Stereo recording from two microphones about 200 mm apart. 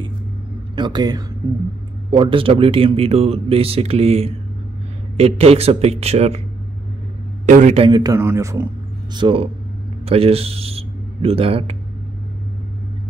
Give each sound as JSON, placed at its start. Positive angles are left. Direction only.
{"t": 0.7, "sound": "a man's voice", "side_deg": -20}
{"t": 7.4, "sound": "a man's voice", "side_deg": -40}
{"t": 9.1, "sound": "a man's voice", "side_deg": -25}